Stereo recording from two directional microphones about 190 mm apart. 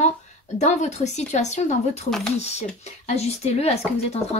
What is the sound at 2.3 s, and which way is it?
A woman's voice, 35° left (ahead or behind).